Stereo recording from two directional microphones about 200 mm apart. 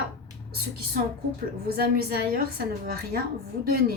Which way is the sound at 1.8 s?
50° right (ahead or behind).